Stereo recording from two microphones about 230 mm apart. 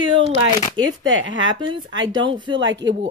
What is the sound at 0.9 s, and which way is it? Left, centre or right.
Speech, right.